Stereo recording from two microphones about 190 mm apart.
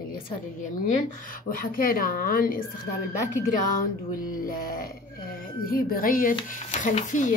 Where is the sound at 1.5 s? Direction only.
50° left (ahead or behind).